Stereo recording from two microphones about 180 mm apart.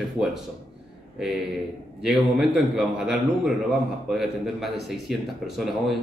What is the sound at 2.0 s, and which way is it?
Speech, 5° right (ahead or behind).